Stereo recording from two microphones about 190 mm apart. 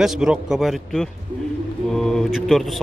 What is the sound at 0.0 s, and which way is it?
A man's voice, 5° right (ahead or behind).